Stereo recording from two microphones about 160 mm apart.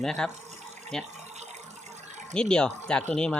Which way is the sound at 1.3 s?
45° right (ahead or behind).